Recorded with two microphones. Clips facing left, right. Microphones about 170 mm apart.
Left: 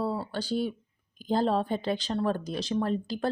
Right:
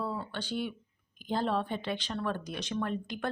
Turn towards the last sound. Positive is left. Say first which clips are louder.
# left 5 dB
turn(degrees=35)  # may be behind; listen again after turning